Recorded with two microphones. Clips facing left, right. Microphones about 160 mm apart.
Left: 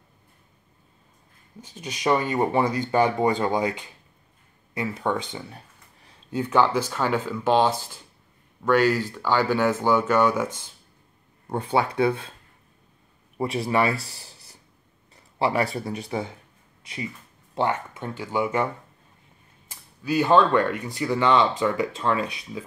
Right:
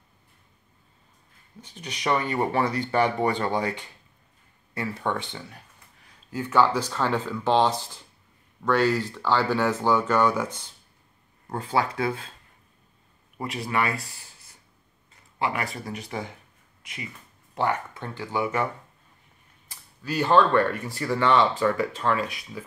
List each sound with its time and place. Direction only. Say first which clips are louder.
1.9 s speech: left 3 dB; 15° left (ahead or behind)
4.7 s speech: left 2 dB; 15° left (ahead or behind)
11.5 s speech: left 3 dB; 25° left (ahead or behind)
13.4 s speech: left 5 dB; 25° left (ahead or behind)
14.1 s a sound: left 4 dB; 35° left (ahead or behind)
15.3 s speech: left 5 dB; 30° left (ahead or behind)
17.6 s speech: left 1 dB; 20° left (ahead or behind)
20.0 s speech: left 2 dB; 15° left (ahead or behind)